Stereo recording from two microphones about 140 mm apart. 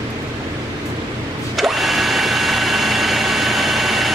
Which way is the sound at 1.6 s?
Centre (ahead or behind).